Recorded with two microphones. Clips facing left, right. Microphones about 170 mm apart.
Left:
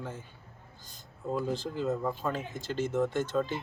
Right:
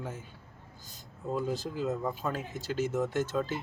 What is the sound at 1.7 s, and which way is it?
Speech, 5° right (ahead or behind).